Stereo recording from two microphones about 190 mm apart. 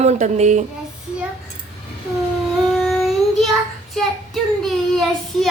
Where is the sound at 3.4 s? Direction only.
Centre (ahead or behind).